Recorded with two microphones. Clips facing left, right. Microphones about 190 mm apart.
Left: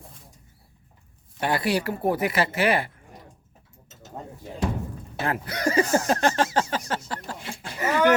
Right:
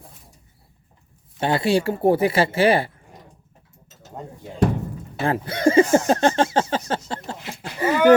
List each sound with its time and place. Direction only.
1.4 s speech: 25° right (ahead or behind)
5.2 s speech: 30° right (ahead or behind)